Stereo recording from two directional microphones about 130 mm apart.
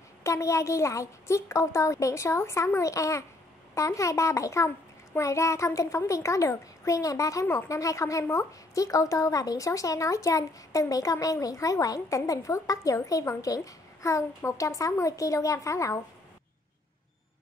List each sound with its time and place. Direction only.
0.2 s a child's voice: 25° left (ahead or behind)